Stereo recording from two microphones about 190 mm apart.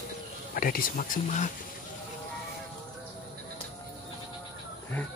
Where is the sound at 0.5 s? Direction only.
50° left (ahead or behind).